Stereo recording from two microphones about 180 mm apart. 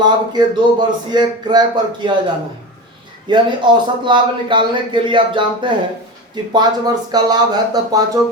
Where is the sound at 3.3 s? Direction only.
25° right (ahead or behind).